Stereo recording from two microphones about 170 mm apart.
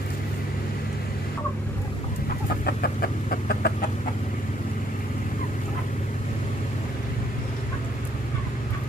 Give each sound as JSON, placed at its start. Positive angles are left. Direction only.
{"t": 2.6, "sound": "chicken", "side_deg": 60}